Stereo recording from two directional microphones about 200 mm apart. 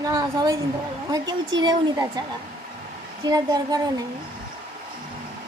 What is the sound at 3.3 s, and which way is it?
Speech, 20° right (ahead or behind).